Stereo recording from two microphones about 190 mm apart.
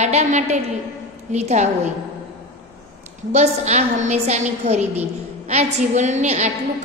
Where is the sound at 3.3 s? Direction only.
35° right (ahead or behind).